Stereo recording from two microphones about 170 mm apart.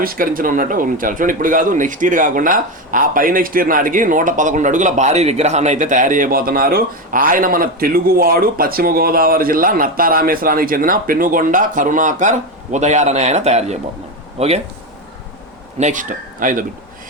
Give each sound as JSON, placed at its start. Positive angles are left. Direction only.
{"t": 0.0, "sound": "a man's voice", "side_deg": -55}
{"t": 15.8, "sound": "a man's voice", "side_deg": -50}